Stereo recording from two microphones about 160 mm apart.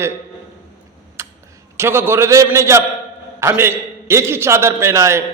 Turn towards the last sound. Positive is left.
turn(degrees=-20)  # may be behind; listen again after turning